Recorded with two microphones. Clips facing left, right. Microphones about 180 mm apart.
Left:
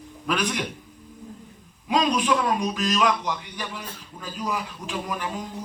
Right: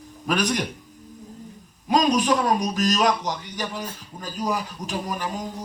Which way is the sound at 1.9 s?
40° right (ahead or behind).